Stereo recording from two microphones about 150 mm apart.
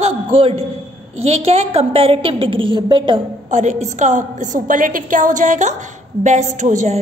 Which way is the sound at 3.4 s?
50° right (ahead or behind).